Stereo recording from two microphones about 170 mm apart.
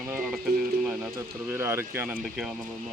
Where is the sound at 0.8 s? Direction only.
Centre (ahead or behind).